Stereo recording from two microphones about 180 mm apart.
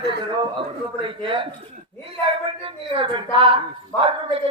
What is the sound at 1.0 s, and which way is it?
Speech, 30° right (ahead or behind).